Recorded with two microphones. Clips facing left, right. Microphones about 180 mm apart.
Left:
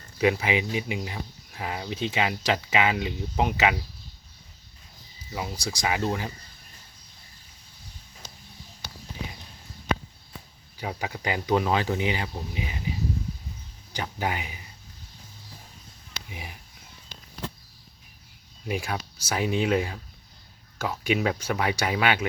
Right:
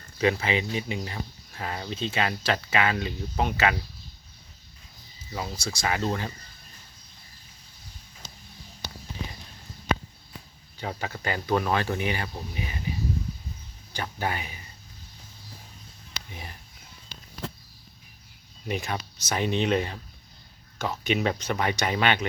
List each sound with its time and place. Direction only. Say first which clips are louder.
0.2 s speech: left 1 dB; 10° left (ahead or behind)
5.3 s speech: left 1 dB; 15° left (ahead or behind)
10.8 s speech: left 1 dB; 10° left (ahead or behind)
13.9 s speech: left 1 dB; 15° left (ahead or behind)
16.3 s speech: left 2 dB; 10° left (ahead or behind)
18.7 s speech: left 1 dB; 10° left (ahead or behind)